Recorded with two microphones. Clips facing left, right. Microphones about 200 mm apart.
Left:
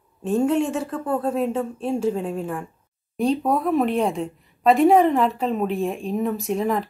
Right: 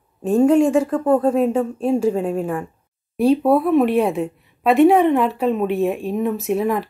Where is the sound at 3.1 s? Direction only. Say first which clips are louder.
Right 6 dB; 5° right (ahead or behind).